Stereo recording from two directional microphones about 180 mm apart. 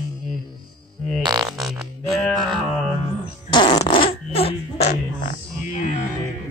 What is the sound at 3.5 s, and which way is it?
Fart, 25° left (ahead or behind).